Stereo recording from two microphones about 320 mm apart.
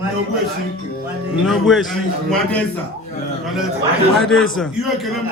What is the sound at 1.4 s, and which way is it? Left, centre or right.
Speech, centre.